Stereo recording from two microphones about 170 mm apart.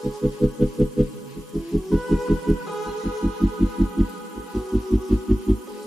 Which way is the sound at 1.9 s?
Centre (ahead or behind).